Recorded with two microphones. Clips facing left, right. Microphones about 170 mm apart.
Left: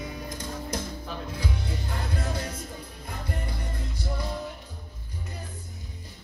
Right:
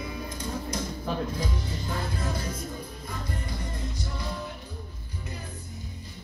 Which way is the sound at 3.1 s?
60° left (ahead or behind).